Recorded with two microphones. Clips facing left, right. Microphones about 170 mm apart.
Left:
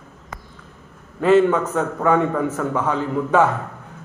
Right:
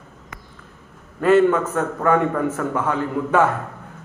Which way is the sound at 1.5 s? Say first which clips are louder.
Even; 10° left (ahead or behind).